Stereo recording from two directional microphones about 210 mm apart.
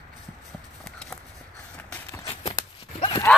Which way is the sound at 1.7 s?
10° left (ahead or behind).